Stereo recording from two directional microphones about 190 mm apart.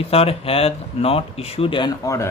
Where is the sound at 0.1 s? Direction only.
30° left (ahead or behind).